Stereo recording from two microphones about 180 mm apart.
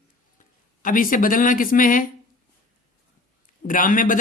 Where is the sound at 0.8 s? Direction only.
50° left (ahead or behind).